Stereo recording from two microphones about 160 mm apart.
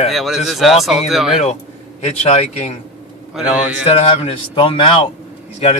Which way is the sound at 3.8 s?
40° left (ahead or behind).